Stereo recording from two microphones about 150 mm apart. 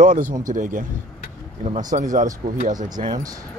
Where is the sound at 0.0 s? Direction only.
65° right (ahead or behind).